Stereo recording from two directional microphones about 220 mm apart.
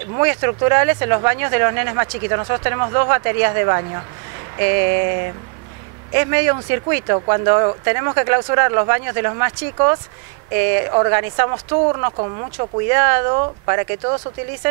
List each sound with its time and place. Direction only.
0.2 s speech: 20° right (ahead or behind)
4.6 s a sound: 15° right (ahead or behind)
6.1 s speech: 20° right (ahead or behind)